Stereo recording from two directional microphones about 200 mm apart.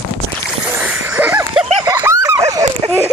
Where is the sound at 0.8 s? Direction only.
5° right (ahead or behind).